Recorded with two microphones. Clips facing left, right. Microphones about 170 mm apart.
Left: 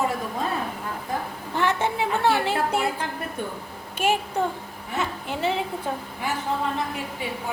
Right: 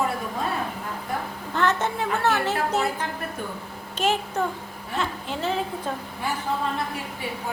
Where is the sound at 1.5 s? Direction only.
10° left (ahead or behind).